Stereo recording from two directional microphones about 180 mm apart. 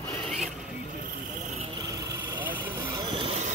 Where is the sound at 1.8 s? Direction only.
20° right (ahead or behind).